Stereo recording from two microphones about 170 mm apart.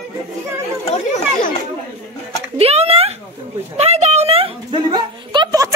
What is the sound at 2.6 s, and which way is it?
A woman's voice, 35° right (ahead or behind).